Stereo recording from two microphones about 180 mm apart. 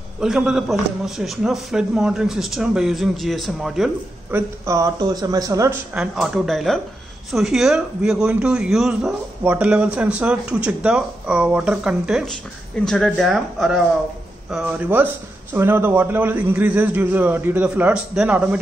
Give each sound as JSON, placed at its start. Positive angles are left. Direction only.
{"t": 0.2, "sound": "a man's voice", "side_deg": -5}
{"t": 5.9, "sound": "a man's voice", "side_deg": 0}